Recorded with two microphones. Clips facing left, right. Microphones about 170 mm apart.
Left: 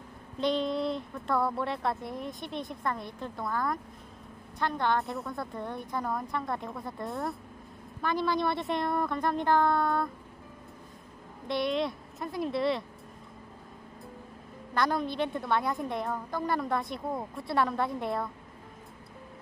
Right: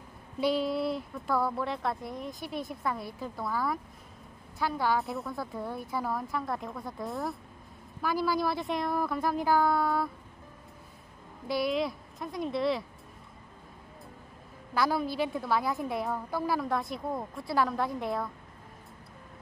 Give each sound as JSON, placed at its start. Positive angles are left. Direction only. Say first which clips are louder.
{"t": 0.4, "sound": "a woman's voice", "louder": "even", "side_deg": -5}
{"t": 11.4, "sound": "a woman's voice", "louder": "even", "side_deg": -5}
{"t": 14.7, "sound": "a woman's voice", "louder": "even", "side_deg": -5}